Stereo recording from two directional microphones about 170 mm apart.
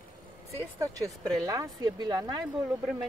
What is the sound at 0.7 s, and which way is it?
Speech, 20° right (ahead or behind).